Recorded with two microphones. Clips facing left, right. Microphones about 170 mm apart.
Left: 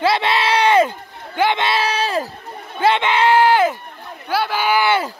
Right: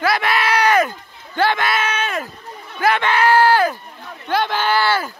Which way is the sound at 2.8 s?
20° left (ahead or behind).